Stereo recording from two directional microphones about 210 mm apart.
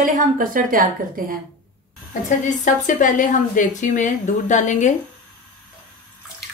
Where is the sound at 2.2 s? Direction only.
35° left (ahead or behind).